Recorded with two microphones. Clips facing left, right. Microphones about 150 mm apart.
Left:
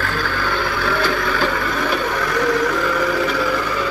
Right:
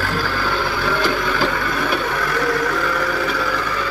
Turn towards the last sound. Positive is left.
turn(degrees=5)  # may be behind; listen again after turning